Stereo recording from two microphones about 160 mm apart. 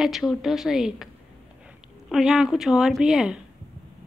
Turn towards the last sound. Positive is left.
turn(degrees=-5)  # may be behind; listen again after turning